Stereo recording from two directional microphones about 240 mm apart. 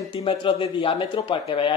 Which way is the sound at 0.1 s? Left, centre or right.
Left.